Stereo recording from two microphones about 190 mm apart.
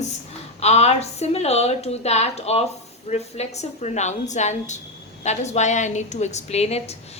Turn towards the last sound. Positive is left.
turn(degrees=35)  # may be behind; listen again after turning